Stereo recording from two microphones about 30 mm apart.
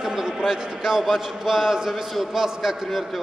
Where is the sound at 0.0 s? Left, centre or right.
Centre.